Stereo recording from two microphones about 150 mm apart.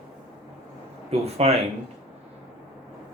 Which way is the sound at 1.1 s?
45° right (ahead or behind).